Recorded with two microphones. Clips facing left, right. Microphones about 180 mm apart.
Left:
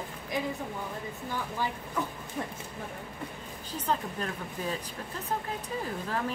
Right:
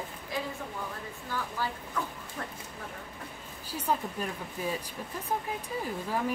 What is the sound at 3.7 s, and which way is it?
Speech, 10° right (ahead or behind).